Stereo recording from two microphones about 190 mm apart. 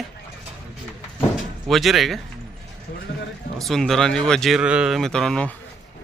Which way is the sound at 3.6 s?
Centre (ahead or behind).